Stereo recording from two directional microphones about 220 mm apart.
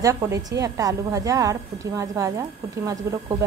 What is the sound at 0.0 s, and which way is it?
A woman's voice, 15° right (ahead or behind).